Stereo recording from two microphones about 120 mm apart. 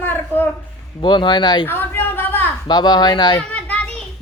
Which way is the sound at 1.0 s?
40° left (ahead or behind).